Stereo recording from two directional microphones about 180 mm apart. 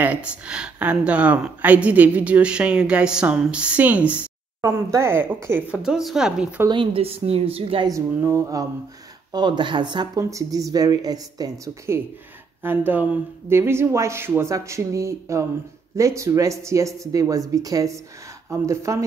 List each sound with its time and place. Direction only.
0.0 s speech: 5° right (ahead or behind)
6.7 s a woman's voice: 30° right (ahead or behind)
7.9 s speech: 15° right (ahead or behind)